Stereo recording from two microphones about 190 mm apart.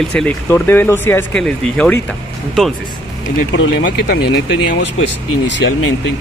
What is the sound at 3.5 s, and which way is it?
Speech, 60° left (ahead or behind).